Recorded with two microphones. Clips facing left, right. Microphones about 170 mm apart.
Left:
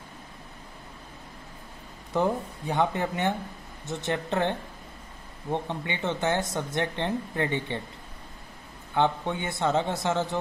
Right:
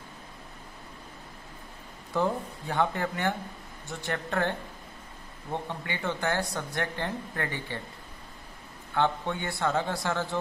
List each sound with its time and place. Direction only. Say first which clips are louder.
2.1 s speech: left 2 dB; 20° left (ahead or behind)
8.9 s speech: left 2 dB; 15° left (ahead or behind)